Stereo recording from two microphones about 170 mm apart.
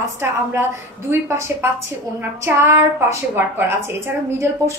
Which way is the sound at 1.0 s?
15° right (ahead or behind).